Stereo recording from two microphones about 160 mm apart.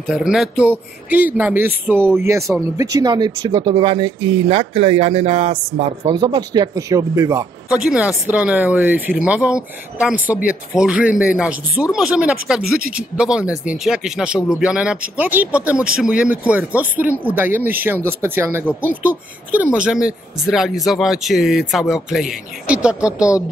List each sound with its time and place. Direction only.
0.0 s speech: 5° right (ahead or behind); by 5.6 s 45° right (ahead or behind)
5.8 s speech: 30° right (ahead or behind)
7.7 s speech: 5° right (ahead or behind)